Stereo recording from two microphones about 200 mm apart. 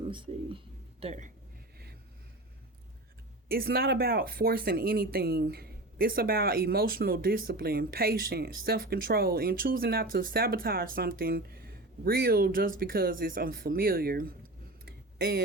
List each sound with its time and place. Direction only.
0.0 s speech: 25° right (ahead or behind)
3.5 s speech: 50° right (ahead or behind)
14.8 s a sound: 50° right (ahead or behind)